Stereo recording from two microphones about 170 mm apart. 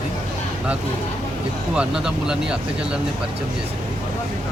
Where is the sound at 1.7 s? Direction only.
5° right (ahead or behind).